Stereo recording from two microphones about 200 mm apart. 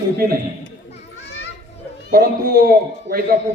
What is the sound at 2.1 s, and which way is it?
A man's voice, 50° right (ahead or behind).